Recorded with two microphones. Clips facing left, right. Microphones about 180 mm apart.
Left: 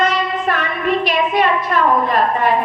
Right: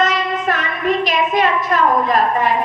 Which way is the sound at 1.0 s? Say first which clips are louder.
Left 1 dB; 45° right (ahead or behind).